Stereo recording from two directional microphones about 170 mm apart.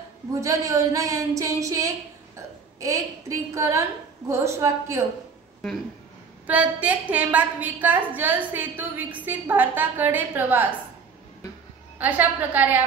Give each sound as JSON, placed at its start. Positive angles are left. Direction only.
{"t": 0.3, "sound": "a woman's voice", "side_deg": -20}
{"t": 6.4, "sound": "a woman's voice", "side_deg": -10}
{"t": 12.0, "sound": "a woman's voice", "side_deg": -10}